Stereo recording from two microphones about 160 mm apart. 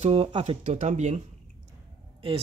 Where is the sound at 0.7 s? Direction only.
50° right (ahead or behind).